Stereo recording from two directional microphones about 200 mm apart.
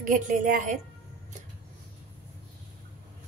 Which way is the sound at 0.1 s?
40° right (ahead or behind).